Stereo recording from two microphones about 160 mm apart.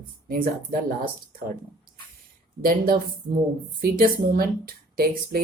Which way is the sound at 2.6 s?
65° right (ahead or behind).